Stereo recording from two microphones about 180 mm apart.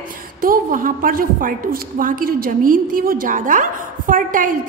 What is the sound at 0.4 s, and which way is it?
A woman's voice, 50° right (ahead or behind).